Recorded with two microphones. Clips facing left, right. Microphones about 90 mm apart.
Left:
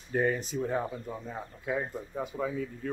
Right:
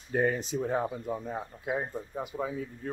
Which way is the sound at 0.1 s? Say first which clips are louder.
Right 1 dB; 45° right (ahead or behind).